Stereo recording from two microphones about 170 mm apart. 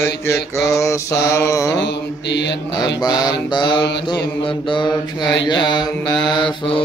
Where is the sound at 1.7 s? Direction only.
90° left.